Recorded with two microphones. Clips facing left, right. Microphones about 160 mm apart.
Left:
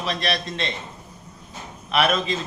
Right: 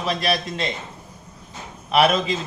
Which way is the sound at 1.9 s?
25° right (ahead or behind).